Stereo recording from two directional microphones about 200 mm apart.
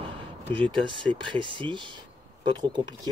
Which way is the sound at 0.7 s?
25° right (ahead or behind).